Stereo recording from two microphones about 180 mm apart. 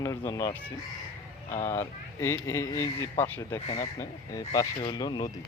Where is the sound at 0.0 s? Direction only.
15° left (ahead or behind).